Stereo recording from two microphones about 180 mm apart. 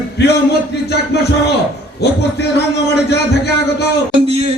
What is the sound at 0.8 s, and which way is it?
A man's voice, 65° left (ahead or behind).